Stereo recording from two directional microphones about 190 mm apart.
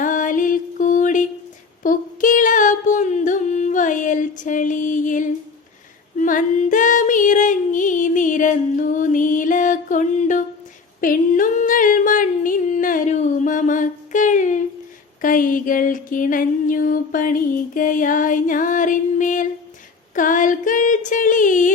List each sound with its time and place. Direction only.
0.0 s music: 45° left (ahead or behind)
1.8 s a sound: 45° left (ahead or behind)
6.1 s female singing: 45° left (ahead or behind)
11.0 s singing: 45° left (ahead or behind)
15.2 s music: 45° left (ahead or behind)
20.1 s a sound: 45° left (ahead or behind)